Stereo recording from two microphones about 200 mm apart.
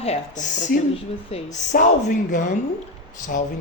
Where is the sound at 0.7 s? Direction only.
50° left (ahead or behind).